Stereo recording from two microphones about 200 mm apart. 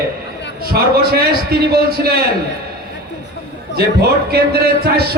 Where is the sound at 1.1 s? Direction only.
50° right (ahead or behind).